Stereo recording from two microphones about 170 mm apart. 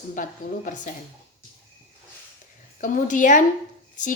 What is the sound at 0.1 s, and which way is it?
Speech, 50° left (ahead or behind).